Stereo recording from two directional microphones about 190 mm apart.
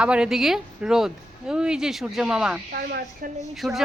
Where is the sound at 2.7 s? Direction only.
55° right (ahead or behind).